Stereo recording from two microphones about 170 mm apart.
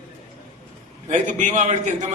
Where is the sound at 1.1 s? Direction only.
45° right (ahead or behind).